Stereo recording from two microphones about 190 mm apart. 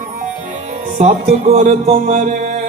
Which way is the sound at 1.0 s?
35° right (ahead or behind).